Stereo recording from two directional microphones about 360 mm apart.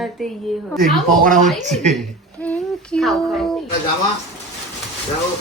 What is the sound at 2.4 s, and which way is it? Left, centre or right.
Speech, centre.